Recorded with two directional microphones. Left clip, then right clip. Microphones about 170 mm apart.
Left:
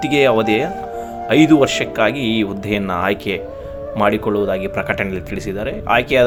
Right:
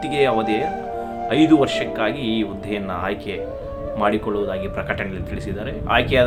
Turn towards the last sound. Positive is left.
turn(degrees=35)  # may be behind; listen again after turning